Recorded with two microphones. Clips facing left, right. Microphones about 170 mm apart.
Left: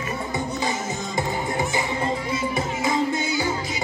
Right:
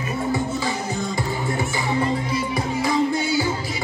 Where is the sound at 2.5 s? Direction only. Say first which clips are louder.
Right 3 dB; 20° left (ahead or behind).